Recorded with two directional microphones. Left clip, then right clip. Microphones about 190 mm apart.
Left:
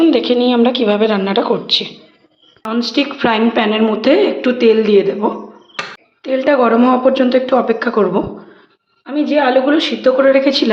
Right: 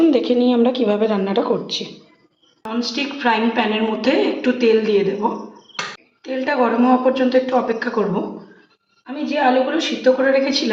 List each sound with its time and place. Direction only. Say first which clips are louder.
0.0 s speech: left 3 dB; 5° right (ahead or behind)
2.7 s a woman's voice: left 6 dB; 65° left (ahead or behind)
6.2 s a woman's voice: left 6 dB; 60° left (ahead or behind)
9.0 s a woman's voice: left 4 dB; 65° left (ahead or behind)